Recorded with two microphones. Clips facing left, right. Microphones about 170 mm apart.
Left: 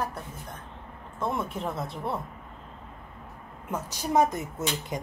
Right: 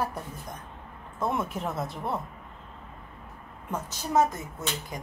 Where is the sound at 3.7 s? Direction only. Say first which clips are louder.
Left 1 dB; 15° left (ahead or behind).